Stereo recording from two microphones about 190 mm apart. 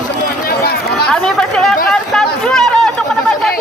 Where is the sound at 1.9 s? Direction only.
5° left (ahead or behind).